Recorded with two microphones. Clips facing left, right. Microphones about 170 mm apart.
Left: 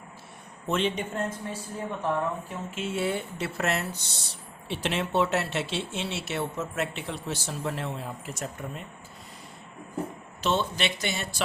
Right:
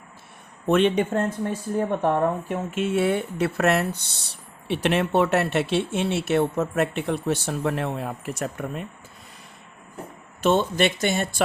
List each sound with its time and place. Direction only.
0.7 s speech: 60° right (ahead or behind)
10.4 s speech: 50° right (ahead or behind)